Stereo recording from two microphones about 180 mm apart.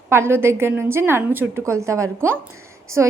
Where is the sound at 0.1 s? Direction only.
15° right (ahead or behind).